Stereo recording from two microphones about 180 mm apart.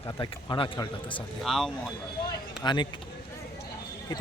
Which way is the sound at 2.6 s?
25° left (ahead or behind).